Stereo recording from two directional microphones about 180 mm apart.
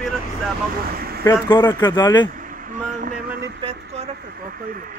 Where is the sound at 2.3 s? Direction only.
50° right (ahead or behind).